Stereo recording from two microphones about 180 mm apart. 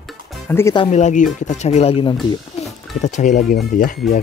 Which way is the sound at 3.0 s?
40° left (ahead or behind).